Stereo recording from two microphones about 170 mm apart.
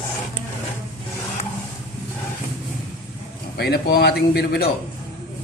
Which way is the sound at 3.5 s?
70° left (ahead or behind).